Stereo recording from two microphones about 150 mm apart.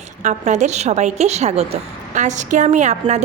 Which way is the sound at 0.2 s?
55° right (ahead or behind).